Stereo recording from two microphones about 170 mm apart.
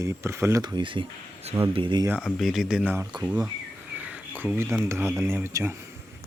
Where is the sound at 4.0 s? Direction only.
10° right (ahead or behind).